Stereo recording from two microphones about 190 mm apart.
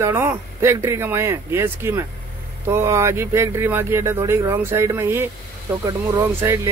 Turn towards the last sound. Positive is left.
turn(degrees=-15)  # may be behind; listen again after turning